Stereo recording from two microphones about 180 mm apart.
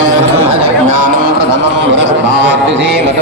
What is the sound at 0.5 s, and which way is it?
Speech, 35° right (ahead or behind).